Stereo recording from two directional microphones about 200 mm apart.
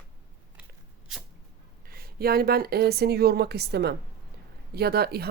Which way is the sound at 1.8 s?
50° right (ahead or behind).